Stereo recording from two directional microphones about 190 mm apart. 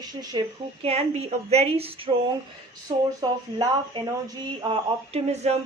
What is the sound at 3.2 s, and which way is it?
Speech, 20° right (ahead or behind).